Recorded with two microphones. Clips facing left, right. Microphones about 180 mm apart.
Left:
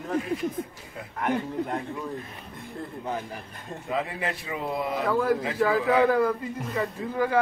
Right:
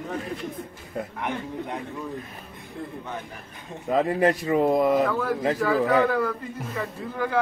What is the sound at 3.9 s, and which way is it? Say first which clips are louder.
Speech: right 9 dB; 40° right (ahead or behind).